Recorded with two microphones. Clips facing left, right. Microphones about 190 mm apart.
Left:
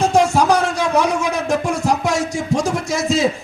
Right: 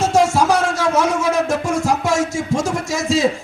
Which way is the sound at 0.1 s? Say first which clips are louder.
Even; 15° left (ahead or behind).